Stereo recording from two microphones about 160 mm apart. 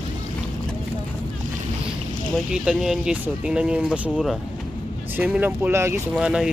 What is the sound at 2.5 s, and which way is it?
Speech, 5° right (ahead or behind).